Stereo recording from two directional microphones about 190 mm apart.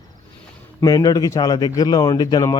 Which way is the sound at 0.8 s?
20° left (ahead or behind).